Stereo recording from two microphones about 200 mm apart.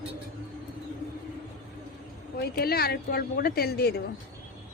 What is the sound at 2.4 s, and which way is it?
A woman's voice, 50° left (ahead or behind).